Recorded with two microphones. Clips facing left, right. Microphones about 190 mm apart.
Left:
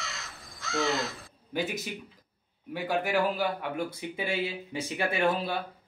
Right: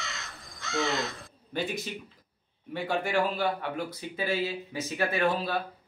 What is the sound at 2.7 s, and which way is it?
A man's voice, 10° left (ahead or behind).